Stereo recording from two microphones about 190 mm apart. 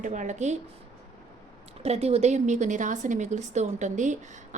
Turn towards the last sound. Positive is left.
turn(degrees=-40)  # may be behind; listen again after turning